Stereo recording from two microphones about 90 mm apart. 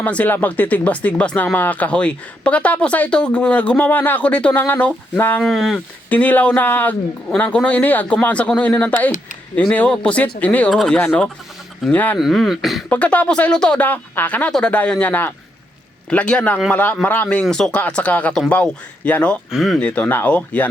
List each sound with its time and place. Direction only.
0.0 s speech: 15° left (ahead or behind)
5.4 s speech: centre (ahead or behind)
6.1 s speech: 20° left (ahead or behind)
12.1 s speech: centre (ahead or behind)
12.9 s speech: 15° left (ahead or behind)
19.5 s speech: centre (ahead or behind)
19.8 s speech: 20° left (ahead or behind)